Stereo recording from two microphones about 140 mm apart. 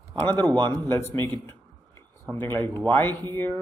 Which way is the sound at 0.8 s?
15° left (ahead or behind).